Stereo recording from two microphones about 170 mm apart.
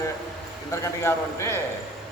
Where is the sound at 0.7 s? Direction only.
15° left (ahead or behind).